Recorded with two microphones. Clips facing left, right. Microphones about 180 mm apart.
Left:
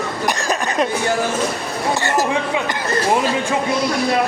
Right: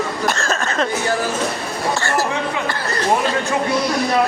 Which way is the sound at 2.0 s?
20° left (ahead or behind).